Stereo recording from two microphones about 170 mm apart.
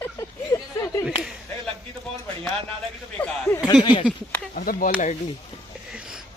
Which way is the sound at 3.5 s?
25° left (ahead or behind).